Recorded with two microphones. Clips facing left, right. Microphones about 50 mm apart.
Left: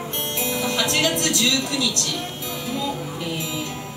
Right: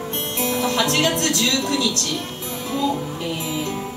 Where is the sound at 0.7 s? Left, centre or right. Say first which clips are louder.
Right 1 dB; right.